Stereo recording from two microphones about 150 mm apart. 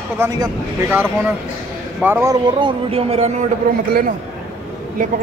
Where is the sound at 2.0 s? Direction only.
15° right (ahead or behind).